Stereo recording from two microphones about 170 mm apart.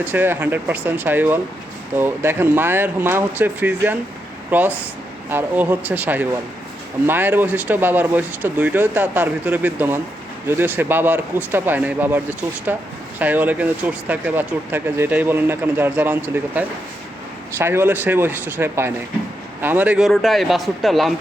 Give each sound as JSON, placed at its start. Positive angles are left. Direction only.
{"t": 0.0, "sound": "speech", "side_deg": -10}